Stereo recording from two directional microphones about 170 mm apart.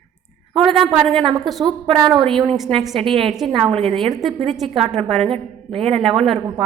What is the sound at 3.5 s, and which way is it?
Speech, 35° right (ahead or behind).